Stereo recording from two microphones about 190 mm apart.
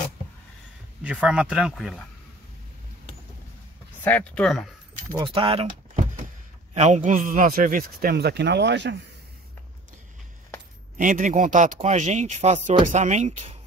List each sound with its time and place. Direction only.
1.0 s speech: 5° right (ahead or behind)
4.0 s speech: 10° left (ahead or behind)
5.1 s speech: 25° right (ahead or behind)
6.7 s a man's voice: 35° right (ahead or behind); by 8.9 s 70° right (ahead or behind)
11.0 s speech: 45° right (ahead or behind)